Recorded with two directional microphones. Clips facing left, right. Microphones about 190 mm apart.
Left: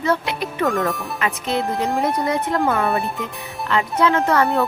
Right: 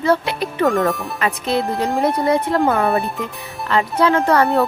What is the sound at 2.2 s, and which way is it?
Speech, 30° right (ahead or behind).